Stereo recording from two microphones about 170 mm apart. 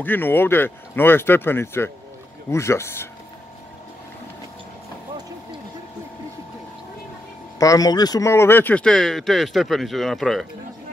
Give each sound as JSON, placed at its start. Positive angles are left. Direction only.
{"t": 0.0, "sound": "speech", "side_deg": 10}
{"t": 7.5, "sound": "speech", "side_deg": 20}